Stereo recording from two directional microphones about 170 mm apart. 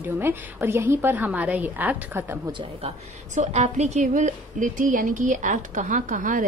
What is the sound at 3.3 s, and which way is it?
A woman's voice, 45° right (ahead or behind).